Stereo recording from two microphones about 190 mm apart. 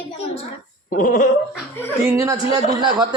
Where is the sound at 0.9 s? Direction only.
45° left (ahead or behind).